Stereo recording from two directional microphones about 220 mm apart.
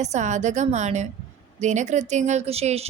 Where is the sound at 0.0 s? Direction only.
30° right (ahead or behind).